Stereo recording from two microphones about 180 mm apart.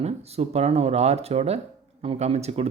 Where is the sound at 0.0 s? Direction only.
35° right (ahead or behind).